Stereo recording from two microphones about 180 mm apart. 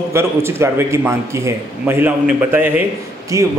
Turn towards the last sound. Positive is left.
turn(degrees=-15)  # may be behind; listen again after turning